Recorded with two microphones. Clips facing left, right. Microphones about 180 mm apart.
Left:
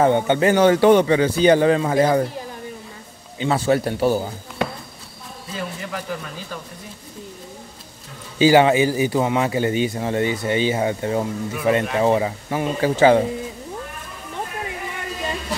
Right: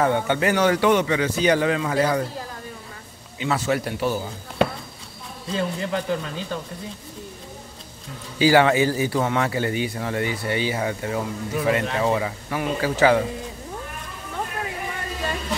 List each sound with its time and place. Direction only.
0.0 s a man's voice: 25° left (ahead or behind)
3.3 s a man's voice: 30° left (ahead or behind)
5.5 s speech: 30° right (ahead or behind)
8.4 s a man's voice: 20° left (ahead or behind)